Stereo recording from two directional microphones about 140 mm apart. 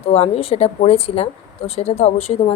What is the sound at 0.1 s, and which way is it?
A woman's voice, 45° left (ahead or behind).